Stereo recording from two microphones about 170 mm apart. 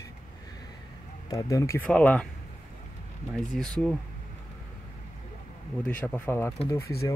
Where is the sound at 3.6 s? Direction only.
5° left (ahead or behind).